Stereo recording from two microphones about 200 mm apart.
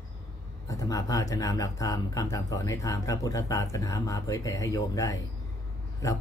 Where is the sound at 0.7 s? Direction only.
15° left (ahead or behind).